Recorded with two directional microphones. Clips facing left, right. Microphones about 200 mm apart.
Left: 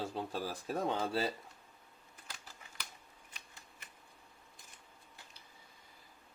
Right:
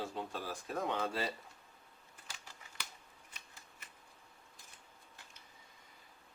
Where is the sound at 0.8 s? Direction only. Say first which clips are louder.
Left 2 dB; 30° left (ahead or behind).